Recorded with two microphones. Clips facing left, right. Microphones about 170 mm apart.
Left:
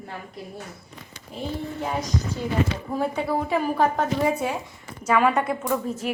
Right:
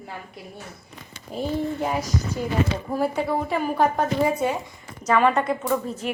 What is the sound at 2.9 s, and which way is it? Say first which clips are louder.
A woman's voice: right 1 dB; 5° right (ahead or behind).